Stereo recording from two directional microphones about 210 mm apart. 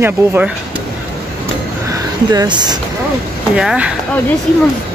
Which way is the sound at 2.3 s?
20° right (ahead or behind).